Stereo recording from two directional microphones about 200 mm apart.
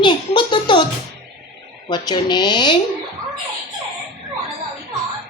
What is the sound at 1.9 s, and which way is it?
Speech, 20° left (ahead or behind).